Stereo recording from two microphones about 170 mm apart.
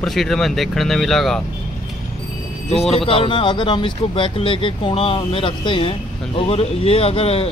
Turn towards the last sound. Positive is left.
turn(degrees=35)  # may be behind; listen again after turning